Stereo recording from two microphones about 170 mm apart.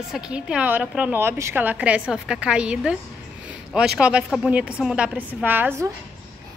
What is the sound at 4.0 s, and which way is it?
A woman's voice, 5° right (ahead or behind).